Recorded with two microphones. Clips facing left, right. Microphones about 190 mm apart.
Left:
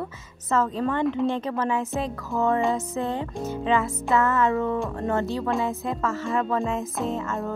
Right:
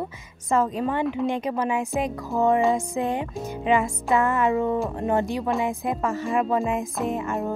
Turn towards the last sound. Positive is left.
turn(degrees=-15)  # may be behind; listen again after turning